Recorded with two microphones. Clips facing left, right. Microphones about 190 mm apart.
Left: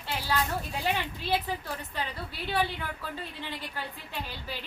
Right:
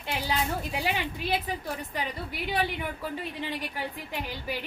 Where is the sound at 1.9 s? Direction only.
15° right (ahead or behind).